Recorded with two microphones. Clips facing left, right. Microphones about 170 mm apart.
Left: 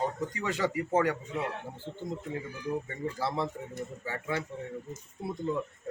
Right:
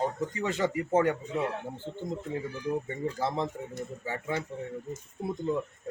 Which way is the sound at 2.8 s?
20° right (ahead or behind).